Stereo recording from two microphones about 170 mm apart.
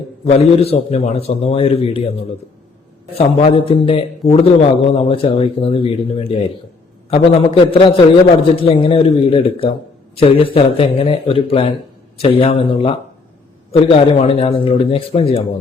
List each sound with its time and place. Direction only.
0.3 s a man's voice: 35° left (ahead or behind)
3.2 s a man's voice: 35° left (ahead or behind)